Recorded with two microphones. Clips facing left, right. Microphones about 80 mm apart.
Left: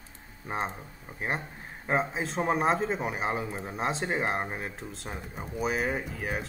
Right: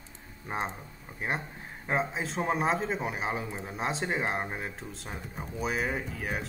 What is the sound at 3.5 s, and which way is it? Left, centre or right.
Speech, centre.